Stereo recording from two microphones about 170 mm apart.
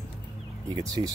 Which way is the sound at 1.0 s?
30° right (ahead or behind).